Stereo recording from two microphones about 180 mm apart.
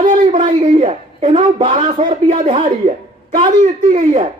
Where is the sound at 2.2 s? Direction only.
45° right (ahead or behind).